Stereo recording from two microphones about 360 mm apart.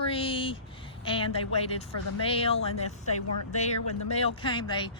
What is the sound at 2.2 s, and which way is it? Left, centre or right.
Speech, centre.